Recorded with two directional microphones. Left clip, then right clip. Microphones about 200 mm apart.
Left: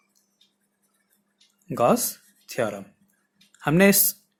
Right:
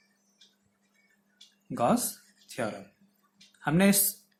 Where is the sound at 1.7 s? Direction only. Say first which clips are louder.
Left 6 dB; 45° left (ahead or behind).